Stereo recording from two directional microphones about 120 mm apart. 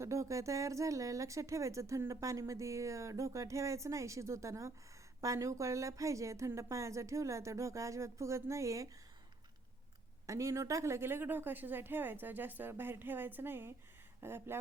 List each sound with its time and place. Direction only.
0.0 s speech: 25° right (ahead or behind)
10.2 s speech: 25° right (ahead or behind)